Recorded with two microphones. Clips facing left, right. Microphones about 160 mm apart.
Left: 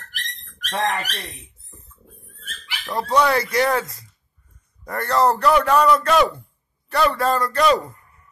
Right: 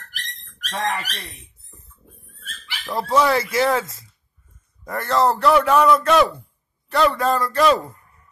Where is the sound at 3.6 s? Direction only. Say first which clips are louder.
Right 1 dB; centre (ahead or behind).